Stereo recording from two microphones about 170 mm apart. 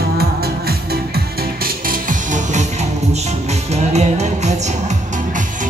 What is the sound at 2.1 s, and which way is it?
Music, 50° right (ahead or behind).